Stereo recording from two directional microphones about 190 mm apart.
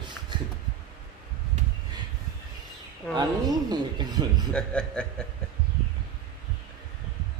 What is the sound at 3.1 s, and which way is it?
Speech, 20° right (ahead or behind).